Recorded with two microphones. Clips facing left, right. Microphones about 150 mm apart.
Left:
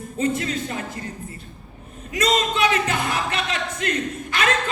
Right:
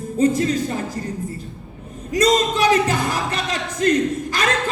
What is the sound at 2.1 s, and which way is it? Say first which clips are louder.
Speech: right 4 dB; 35° right (ahead or behind).